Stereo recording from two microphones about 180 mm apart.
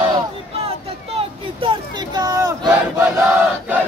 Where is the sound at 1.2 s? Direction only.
30° right (ahead or behind).